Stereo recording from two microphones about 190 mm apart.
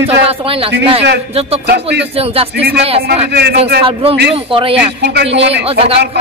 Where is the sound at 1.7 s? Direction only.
65° right (ahead or behind).